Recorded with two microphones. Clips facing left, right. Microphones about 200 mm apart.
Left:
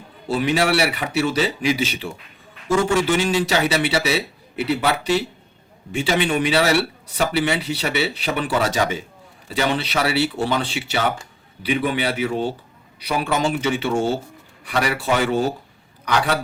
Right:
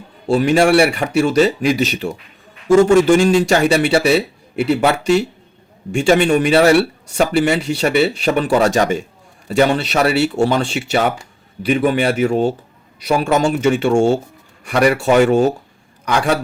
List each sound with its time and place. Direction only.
0.3 s speech: 45° right (ahead or behind)